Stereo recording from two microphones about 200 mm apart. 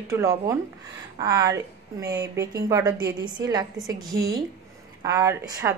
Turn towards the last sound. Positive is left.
turn(degrees=-15)  # may be behind; listen again after turning